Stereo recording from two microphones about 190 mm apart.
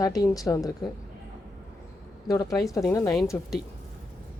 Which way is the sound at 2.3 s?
20° left (ahead or behind).